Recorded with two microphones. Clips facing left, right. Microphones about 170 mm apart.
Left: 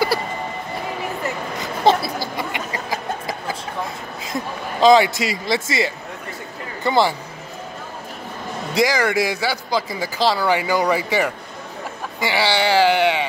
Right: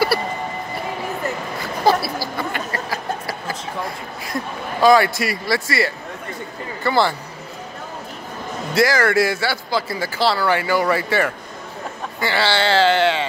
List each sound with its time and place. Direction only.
1.6 s a sound: 20° left (ahead or behind)
4.2 s a man's voice: 20° left (ahead or behind)
8.7 s speech: 15° left (ahead or behind)